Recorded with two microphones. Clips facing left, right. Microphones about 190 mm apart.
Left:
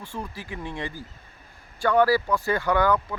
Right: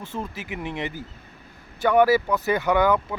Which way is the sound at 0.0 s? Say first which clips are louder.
Right 3 dB; 20° right (ahead or behind).